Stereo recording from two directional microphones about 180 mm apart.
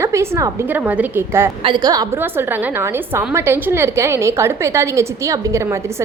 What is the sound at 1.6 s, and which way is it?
A woman's voice, 25° right (ahead or behind).